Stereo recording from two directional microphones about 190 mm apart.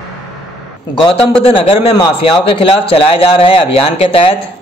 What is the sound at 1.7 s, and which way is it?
A man's voice, 30° left (ahead or behind).